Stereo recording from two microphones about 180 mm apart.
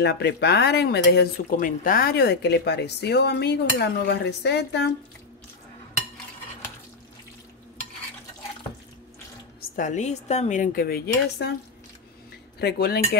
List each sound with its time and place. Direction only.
0.0 s speech: 65° left (ahead or behind)
9.6 s speech: 45° left (ahead or behind); by 11.5 s 60° left (ahead or behind)
12.5 s speech: 60° left (ahead or behind)